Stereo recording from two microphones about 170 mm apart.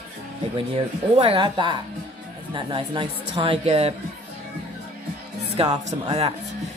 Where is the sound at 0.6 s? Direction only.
30° right (ahead or behind).